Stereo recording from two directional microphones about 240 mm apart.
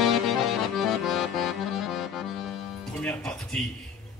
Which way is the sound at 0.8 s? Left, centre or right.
Centre.